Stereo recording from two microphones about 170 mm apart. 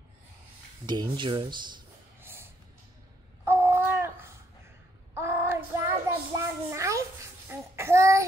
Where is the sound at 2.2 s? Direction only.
15° right (ahead or behind).